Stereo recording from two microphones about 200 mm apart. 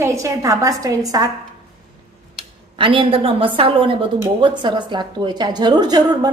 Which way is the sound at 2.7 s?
25° right (ahead or behind).